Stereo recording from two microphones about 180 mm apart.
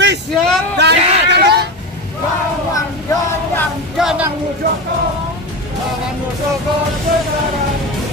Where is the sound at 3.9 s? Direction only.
Centre (ahead or behind).